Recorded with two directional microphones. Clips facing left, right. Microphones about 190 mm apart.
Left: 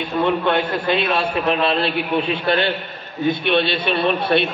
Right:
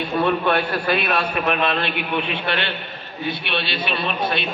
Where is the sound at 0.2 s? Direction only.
20° left (ahead or behind); by 2.7 s 40° left (ahead or behind).